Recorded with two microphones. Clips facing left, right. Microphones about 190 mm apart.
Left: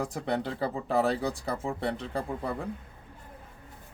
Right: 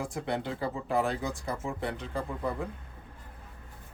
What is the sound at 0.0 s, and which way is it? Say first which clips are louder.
Speech: left 2 dB; 40° left (ahead or behind).